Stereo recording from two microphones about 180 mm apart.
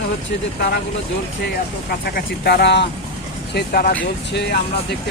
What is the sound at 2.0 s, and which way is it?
Speech, 60° left (ahead or behind).